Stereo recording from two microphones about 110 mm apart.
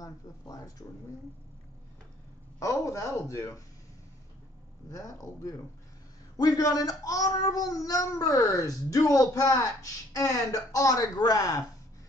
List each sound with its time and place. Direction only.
0.0 s speech: 30° left (ahead or behind)
2.6 s speech: 25° left (ahead or behind)
4.8 s speech: 30° left (ahead or behind)